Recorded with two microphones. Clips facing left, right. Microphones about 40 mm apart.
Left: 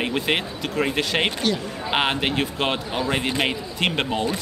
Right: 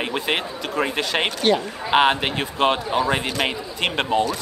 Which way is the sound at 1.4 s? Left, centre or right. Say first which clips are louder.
Right 5 dB; right.